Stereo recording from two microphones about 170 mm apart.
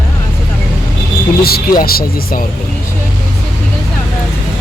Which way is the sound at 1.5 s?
60° left (ahead or behind).